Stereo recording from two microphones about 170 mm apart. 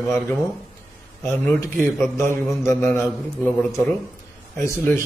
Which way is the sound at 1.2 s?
5° left (ahead or behind).